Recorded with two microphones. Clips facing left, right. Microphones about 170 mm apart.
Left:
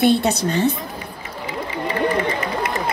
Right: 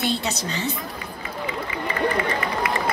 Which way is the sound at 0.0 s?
55° left (ahead or behind).